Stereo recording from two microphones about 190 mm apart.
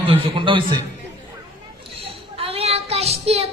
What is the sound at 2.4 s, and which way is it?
Child singing, 30° right (ahead or behind).